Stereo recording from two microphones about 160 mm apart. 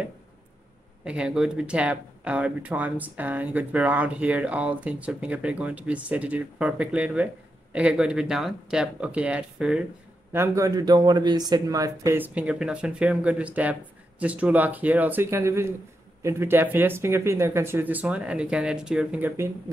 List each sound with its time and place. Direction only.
1.0 s speech: 5° right (ahead or behind)
10.3 s speech: 20° right (ahead or behind)